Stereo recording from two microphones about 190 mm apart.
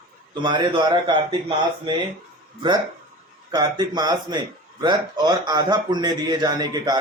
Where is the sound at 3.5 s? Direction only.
20° right (ahead or behind).